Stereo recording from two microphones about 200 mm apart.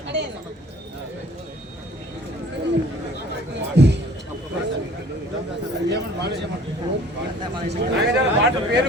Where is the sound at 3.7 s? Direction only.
60° right (ahead or behind).